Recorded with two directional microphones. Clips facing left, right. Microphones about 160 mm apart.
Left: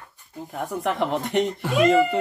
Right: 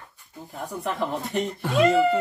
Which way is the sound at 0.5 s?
90° left.